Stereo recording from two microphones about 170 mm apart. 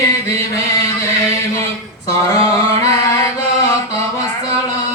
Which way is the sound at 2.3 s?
20° left (ahead or behind).